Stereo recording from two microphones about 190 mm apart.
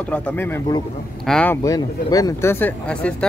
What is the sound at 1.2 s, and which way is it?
Speech, 5° left (ahead or behind).